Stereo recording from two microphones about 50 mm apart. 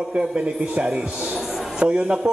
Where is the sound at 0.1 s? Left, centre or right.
Centre.